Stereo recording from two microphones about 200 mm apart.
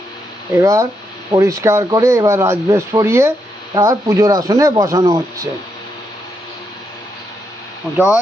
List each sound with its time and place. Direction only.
0.6 s speech: 15° right (ahead or behind)
7.9 s speech: 5° right (ahead or behind)